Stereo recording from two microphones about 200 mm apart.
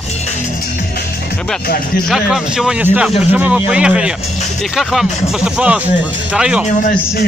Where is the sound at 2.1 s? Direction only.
Centre (ahead or behind).